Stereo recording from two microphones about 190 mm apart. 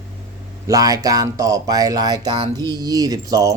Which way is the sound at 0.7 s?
20° right (ahead or behind).